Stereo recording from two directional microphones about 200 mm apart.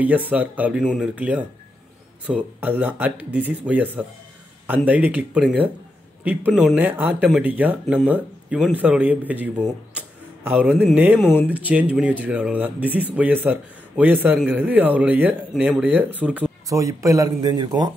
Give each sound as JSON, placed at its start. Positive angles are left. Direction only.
{"t": 0.0, "sound": "speech", "side_deg": -10}
{"t": 11.2, "sound": "speech", "side_deg": 10}
{"t": 11.5, "sound": "speech", "side_deg": -10}